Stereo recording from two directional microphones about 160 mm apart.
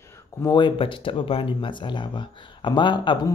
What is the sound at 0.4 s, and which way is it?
Speech, 25° left (ahead or behind).